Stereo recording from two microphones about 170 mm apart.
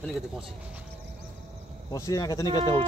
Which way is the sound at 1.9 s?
20° left (ahead or behind).